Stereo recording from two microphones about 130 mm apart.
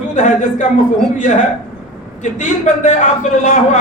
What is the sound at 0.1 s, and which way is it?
Speech, 70° left (ahead or behind).